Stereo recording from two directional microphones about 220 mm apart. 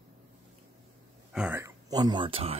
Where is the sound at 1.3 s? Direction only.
5° right (ahead or behind); by 2.5 s 25° right (ahead or behind).